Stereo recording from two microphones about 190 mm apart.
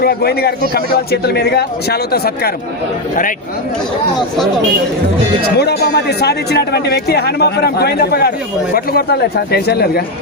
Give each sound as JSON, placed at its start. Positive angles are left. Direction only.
{"t": 0.0, "sound": "a man's voice", "side_deg": 55}
{"t": 5.5, "sound": "a man's voice", "side_deg": 55}